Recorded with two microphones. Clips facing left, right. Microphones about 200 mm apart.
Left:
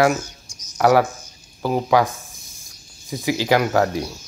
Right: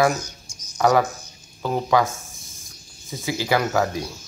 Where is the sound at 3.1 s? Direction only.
15° left (ahead or behind).